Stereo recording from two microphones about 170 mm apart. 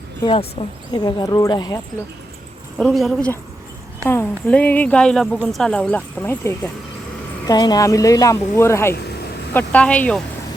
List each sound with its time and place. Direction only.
0.2 s speech: 30° left (ahead or behind)
2.7 s a woman's voice: centre (ahead or behind)
7.4 s speech: 25° left (ahead or behind); by 10.2 s 5° left (ahead or behind)